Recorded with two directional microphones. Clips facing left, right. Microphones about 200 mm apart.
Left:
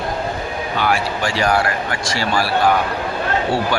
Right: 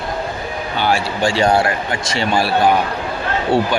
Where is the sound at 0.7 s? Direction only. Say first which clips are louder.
Right 2 dB; 30° right (ahead or behind).